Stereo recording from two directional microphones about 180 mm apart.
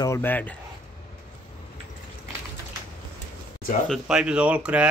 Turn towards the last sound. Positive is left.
turn(degrees=-5)  # may be behind; listen again after turning